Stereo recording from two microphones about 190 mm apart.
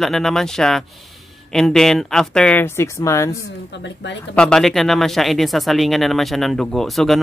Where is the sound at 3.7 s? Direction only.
70° left (ahead or behind).